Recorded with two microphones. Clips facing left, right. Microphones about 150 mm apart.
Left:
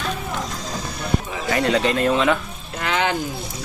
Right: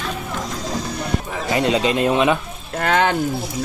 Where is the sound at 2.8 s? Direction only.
50° right (ahead or behind).